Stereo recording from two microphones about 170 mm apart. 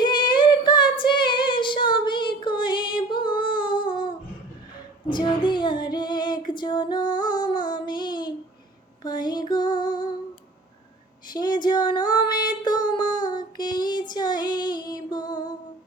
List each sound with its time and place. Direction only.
0.0 s female singing: 25° left (ahead or behind)
9.0 s a sound: 25° left (ahead or behind)
11.3 s female singing: 25° left (ahead or behind)
13.3 s music: 25° left (ahead or behind)